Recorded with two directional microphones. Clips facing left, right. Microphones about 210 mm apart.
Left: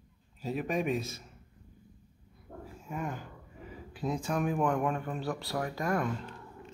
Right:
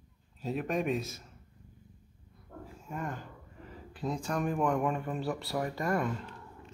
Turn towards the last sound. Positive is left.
turn(degrees=0)  # may be behind; listen again after turning